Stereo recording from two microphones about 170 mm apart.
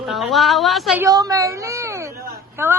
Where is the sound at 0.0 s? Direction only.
Centre (ahead or behind).